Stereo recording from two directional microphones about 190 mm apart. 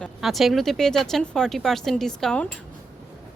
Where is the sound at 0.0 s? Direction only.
Centre (ahead or behind).